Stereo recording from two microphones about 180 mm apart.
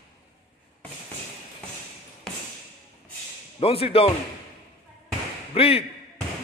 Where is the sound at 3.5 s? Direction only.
30° left (ahead or behind).